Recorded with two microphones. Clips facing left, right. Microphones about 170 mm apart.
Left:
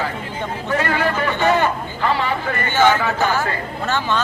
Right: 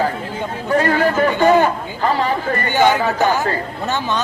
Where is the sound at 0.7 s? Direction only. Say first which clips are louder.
Right 5 dB; 40° right (ahead or behind).